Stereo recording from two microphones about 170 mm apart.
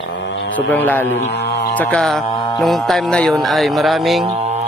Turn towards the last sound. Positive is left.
turn(degrees=0)  # may be behind; listen again after turning